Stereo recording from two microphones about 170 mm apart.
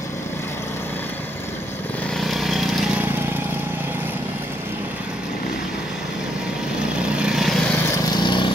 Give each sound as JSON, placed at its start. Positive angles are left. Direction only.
{"t": 2.1, "sound": "vehicle", "side_deg": 0}
{"t": 7.2, "sound": "vehicle", "side_deg": -5}
{"t": 8.1, "sound": "vehicle", "side_deg": 25}